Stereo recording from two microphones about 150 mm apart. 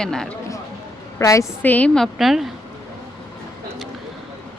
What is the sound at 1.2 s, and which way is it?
A woman's voice, 20° left (ahead or behind).